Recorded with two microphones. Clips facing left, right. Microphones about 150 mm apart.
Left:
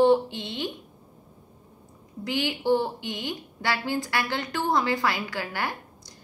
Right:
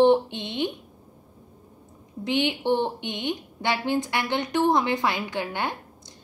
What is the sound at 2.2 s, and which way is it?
A woman's voice, 20° right (ahead or behind).